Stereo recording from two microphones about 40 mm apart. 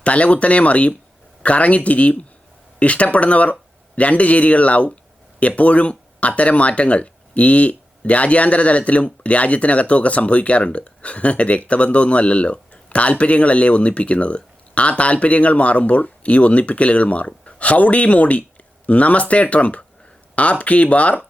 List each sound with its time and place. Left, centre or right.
0.0 s speech: left